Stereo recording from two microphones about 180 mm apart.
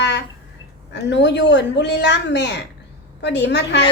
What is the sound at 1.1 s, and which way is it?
A woman's voice, 75° left (ahead or behind).